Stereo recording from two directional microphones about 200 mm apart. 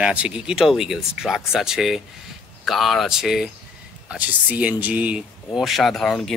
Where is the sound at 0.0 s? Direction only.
5° right (ahead or behind).